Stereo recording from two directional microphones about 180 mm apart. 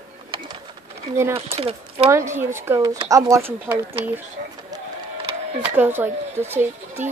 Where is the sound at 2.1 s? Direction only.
15° right (ahead or behind).